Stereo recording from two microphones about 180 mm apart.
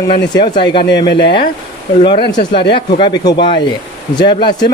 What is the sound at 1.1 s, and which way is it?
Speech, 65° left (ahead or behind).